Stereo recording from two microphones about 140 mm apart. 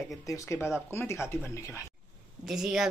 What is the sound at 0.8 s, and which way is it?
Speech, 15° left (ahead or behind).